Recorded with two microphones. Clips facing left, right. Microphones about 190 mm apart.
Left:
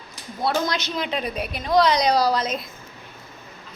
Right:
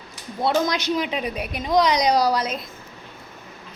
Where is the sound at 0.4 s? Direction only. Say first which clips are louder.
Right 3 dB; 15° right (ahead or behind).